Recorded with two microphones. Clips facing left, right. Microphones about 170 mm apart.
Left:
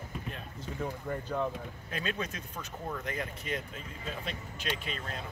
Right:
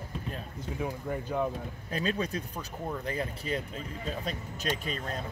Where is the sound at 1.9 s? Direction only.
35° right (ahead or behind).